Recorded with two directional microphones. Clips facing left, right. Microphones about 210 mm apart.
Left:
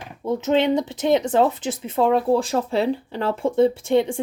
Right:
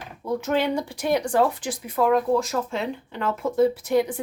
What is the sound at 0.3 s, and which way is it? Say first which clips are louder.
Speech: left 4 dB; 20° left (ahead or behind).